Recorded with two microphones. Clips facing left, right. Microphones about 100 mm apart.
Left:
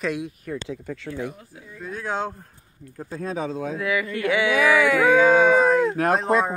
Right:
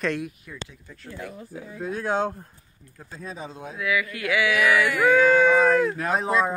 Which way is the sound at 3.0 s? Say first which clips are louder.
Left 8 dB; 55° left (ahead or behind).